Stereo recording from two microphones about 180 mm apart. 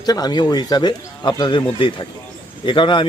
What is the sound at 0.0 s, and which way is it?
A man's voice, 20° left (ahead or behind).